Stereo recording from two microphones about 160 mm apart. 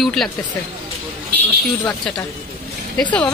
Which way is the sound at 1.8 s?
10° left (ahead or behind).